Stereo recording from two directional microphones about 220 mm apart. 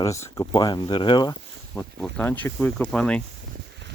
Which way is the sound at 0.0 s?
15° left (ahead or behind).